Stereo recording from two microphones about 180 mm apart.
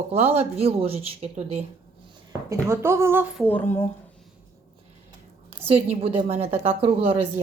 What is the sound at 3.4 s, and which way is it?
Speech, 10° left (ahead or behind).